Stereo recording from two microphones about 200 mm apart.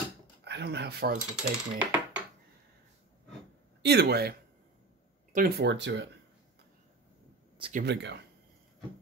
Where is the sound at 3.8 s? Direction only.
55° right (ahead or behind).